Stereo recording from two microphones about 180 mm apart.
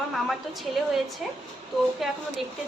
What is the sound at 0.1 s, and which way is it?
Speech, centre (ahead or behind).